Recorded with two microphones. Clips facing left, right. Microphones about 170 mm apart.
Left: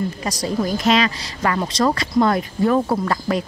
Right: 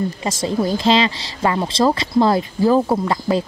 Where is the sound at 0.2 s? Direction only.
25° right (ahead or behind).